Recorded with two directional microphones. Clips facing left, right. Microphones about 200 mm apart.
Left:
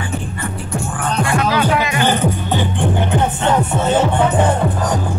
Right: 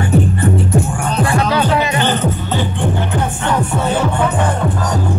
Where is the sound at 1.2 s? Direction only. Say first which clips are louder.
Right 1 dB; 30° right (ahead or behind).